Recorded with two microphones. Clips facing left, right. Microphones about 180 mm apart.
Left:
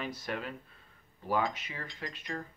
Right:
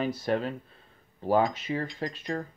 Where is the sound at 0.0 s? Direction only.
30° right (ahead or behind).